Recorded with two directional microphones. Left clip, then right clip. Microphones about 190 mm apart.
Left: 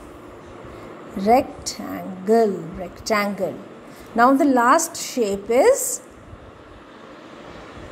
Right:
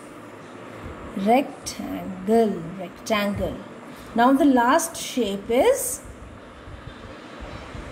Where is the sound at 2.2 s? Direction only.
25° left (ahead or behind).